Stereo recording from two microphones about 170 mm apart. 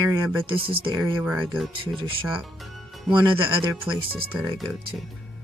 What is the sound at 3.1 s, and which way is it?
Speech, 30° right (ahead or behind).